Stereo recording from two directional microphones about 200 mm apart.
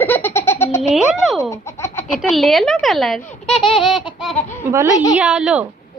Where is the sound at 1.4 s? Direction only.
15° left (ahead or behind).